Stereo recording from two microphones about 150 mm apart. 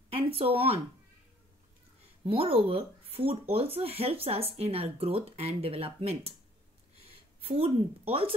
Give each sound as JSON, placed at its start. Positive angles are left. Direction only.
{"t": 0.1, "sound": "speech", "side_deg": -40}
{"t": 2.2, "sound": "speech", "side_deg": -40}